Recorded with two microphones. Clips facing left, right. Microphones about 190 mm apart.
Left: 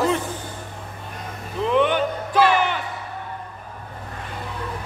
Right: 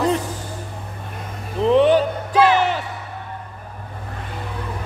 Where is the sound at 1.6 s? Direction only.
35° right (ahead or behind).